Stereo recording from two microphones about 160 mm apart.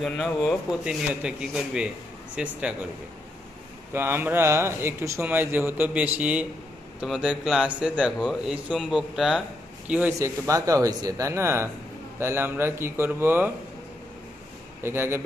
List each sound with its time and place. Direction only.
0.0 s a man's voice: 5° left (ahead or behind)
0.9 s a man's voice: 5° right (ahead or behind)
3.9 s a man's voice: 15° right (ahead or behind)
14.8 s speech: 15° right (ahead or behind)